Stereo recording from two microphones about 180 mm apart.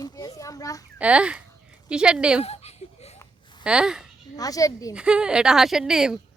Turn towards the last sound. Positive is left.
turn(degrees=-5)  # may be behind; listen again after turning